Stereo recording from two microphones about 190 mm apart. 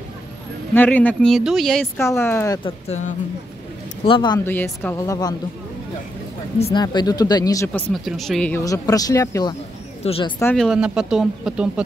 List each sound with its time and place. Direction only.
0.7 s speech: 10° left (ahead or behind)
2.0 s speech: 15° left (ahead or behind)
2.9 s speech: 40° left (ahead or behind)
4.0 s speech: 25° left (ahead or behind)
6.7 s speech: 20° left (ahead or behind)
7.9 s speech: centre (ahead or behind); by 9.6 s 20° left (ahead or behind)
10.0 s speech: 30° left (ahead or behind)
10.4 s speech: 5° left (ahead or behind)